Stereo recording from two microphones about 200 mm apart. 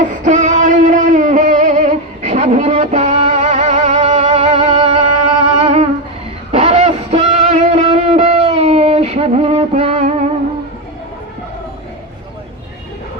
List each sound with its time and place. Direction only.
0.0 s music: 40° right (ahead or behind)